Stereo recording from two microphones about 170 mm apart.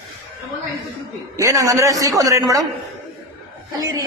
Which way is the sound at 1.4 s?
20° right (ahead or behind).